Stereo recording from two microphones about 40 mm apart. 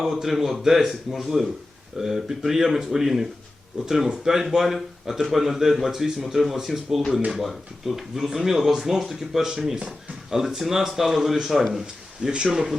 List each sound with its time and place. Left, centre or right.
0.0 s speech: centre
12.2 s speech: right
12.5 s speech: centre